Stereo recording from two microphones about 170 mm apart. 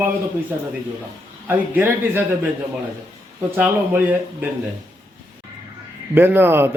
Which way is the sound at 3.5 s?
10° right (ahead or behind).